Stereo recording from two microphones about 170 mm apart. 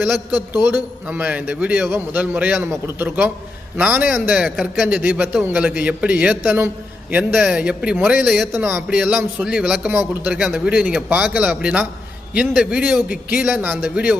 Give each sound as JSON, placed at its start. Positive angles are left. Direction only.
{"t": 0.3, "sound": "a man's voice", "side_deg": 25}
{"t": 0.6, "sound": "a man's voice", "side_deg": -10}